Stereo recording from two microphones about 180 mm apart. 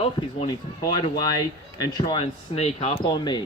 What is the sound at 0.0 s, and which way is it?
Speech, 30° left (ahead or behind).